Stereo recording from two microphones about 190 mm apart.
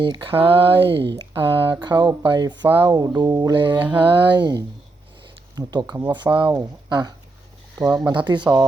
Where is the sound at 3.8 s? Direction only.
10° right (ahead or behind).